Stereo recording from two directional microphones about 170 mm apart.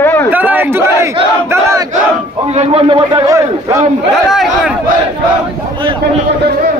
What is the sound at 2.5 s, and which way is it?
Speech, 35° right (ahead or behind).